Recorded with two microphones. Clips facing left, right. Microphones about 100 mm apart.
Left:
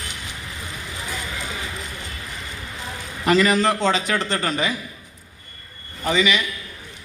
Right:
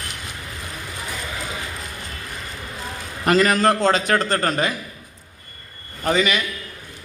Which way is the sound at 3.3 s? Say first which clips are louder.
Right 1 dB; 45° right (ahead or behind).